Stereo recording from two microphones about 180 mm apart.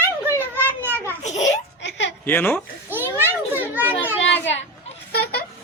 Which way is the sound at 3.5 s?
10° right (ahead or behind).